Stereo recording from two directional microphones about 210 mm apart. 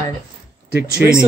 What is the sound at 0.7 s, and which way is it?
Speech, 50° right (ahead or behind).